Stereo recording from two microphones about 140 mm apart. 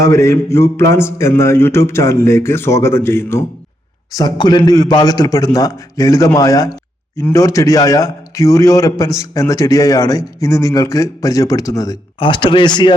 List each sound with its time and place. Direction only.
0.0 s a man's voice: 20° left (ahead or behind)
4.1 s a man's voice: 30° left (ahead or behind)